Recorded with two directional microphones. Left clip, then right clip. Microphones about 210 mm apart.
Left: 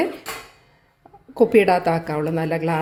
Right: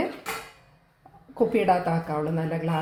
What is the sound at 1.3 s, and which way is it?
Speech, 50° left (ahead or behind).